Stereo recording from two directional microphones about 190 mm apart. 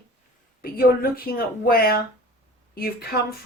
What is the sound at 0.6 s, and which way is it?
Speech, 50° left (ahead or behind).